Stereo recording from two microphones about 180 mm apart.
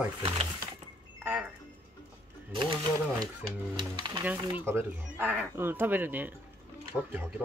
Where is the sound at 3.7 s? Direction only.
25° right (ahead or behind).